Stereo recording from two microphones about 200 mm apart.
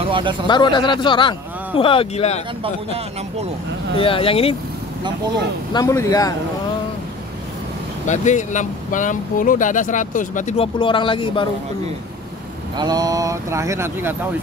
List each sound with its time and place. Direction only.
0.0 s speech: 25° right (ahead or behind)
0.5 s speech: 20° left (ahead or behind)
2.6 s speech: 30° right (ahead or behind)
4.0 s speech: 25° left (ahead or behind)
5.7 s speech: 15° left (ahead or behind)
8.1 s speech: 35° left (ahead or behind)
10.8 s speech: 25° left (ahead or behind)
12.7 s speech: 20° right (ahead or behind)